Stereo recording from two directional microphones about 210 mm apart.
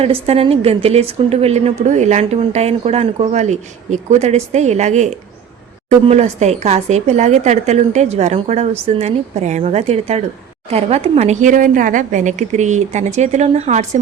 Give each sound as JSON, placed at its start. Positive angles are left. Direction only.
{"t": 0.0, "sound": "a woman's voice", "side_deg": -30}
{"t": 6.1, "sound": "speech", "side_deg": -30}